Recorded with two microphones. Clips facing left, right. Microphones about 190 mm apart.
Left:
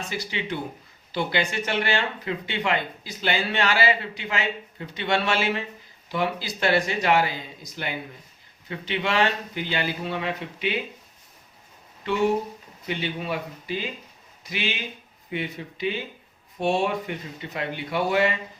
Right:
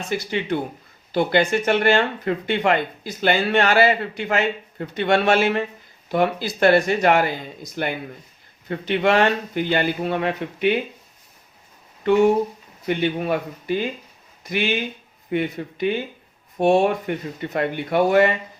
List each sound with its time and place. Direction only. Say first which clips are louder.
0.1 s speech: right 9 dB; 50° right (ahead or behind)
12.9 s speech: right 7 dB; 50° right (ahead or behind)